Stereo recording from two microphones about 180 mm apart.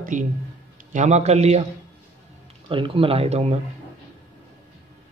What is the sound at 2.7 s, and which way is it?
Speech, 30° right (ahead or behind).